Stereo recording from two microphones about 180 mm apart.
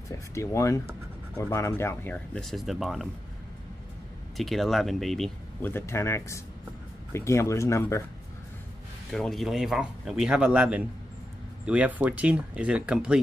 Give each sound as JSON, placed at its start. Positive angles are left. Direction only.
{"t": 0.3, "sound": "speech", "side_deg": 15}
{"t": 4.4, "sound": "speech", "side_deg": 0}
{"t": 9.1, "sound": "speech", "side_deg": 0}